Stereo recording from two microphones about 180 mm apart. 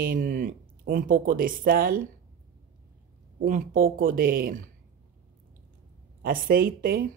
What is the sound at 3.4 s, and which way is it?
Speech, 50° right (ahead or behind).